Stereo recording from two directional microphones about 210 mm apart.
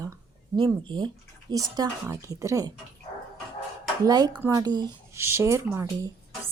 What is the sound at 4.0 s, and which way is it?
Speech, 20° right (ahead or behind).